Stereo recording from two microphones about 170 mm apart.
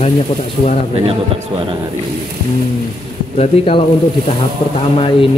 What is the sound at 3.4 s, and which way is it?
Speech, 30° left (ahead or behind).